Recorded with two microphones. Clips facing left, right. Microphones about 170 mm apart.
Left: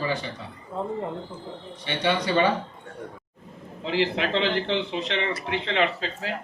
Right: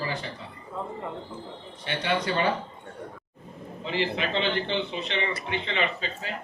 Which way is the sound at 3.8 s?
90° left.